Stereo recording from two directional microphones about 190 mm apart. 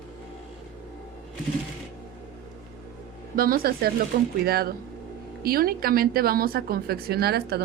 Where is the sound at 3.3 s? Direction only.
50° right (ahead or behind).